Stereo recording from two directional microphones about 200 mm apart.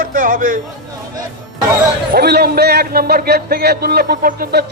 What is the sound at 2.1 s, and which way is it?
A man's voice, 50° right (ahead or behind).